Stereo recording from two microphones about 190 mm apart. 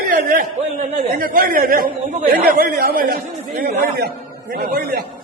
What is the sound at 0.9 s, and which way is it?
A man's voice, 50° right (ahead or behind).